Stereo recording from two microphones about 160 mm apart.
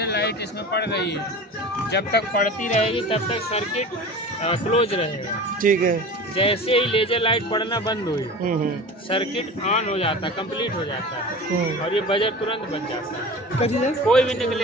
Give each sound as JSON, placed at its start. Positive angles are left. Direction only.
{"t": 0.0, "sound": "a man's voice", "side_deg": 90}
{"t": 2.9, "sound": "speech", "side_deg": 35}
{"t": 5.6, "sound": "speech", "side_deg": -60}
{"t": 6.3, "sound": "speech", "side_deg": 35}
{"t": 9.1, "sound": "speech", "side_deg": 35}
{"t": 11.9, "sound": "speech", "side_deg": 35}
{"t": 13.6, "sound": "speech", "side_deg": 45}
{"t": 14.0, "sound": "a man's voice", "side_deg": 5}